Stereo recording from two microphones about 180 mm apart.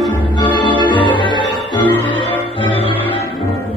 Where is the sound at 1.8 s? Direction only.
10° left (ahead or behind).